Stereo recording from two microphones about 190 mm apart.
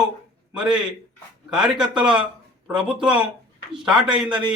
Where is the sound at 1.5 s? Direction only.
5° right (ahead or behind).